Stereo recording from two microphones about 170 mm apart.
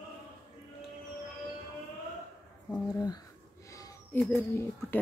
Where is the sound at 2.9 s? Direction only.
20° left (ahead or behind).